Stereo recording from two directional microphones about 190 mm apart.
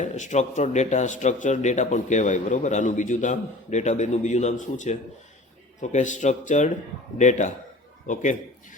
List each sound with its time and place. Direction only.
0.0 s a man's voice: 40° left (ahead or behind)